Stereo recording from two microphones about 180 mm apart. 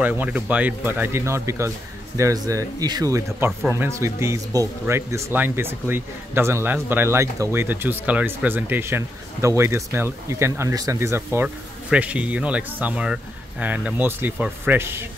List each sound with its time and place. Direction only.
0.0 s speech: 10° right (ahead or behind)